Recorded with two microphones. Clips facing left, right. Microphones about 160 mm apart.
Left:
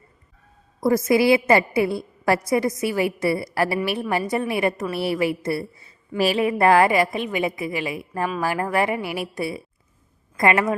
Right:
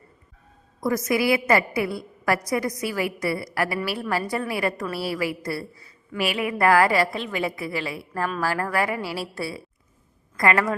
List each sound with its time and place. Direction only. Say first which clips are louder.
0.8 s a woman's voice: left 5 dB; 30° left (ahead or behind)
6.1 s a woman's voice: left 5 dB; 35° left (ahead or behind)